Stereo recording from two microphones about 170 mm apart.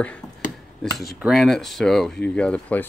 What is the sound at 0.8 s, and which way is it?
Speech, 5° left (ahead or behind).